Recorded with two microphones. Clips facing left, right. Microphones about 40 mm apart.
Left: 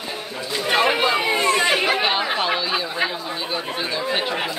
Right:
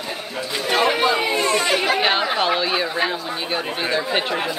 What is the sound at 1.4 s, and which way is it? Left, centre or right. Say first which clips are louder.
Chatter: left 1 dB; left.